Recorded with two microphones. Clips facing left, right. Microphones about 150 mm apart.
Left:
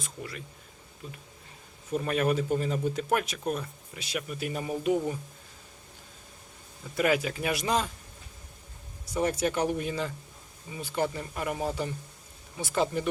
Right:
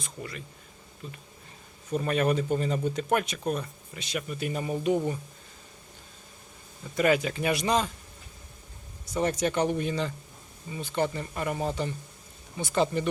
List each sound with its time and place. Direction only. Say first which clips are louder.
0.0 s speech: right 1 dB; centre (ahead or behind)
6.9 s speech: right 2 dB; 5° left (ahead or behind)
9.1 s speech: right 1 dB; 10° left (ahead or behind)